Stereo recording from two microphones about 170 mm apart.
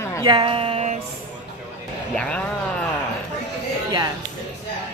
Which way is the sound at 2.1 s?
5° left (ahead or behind).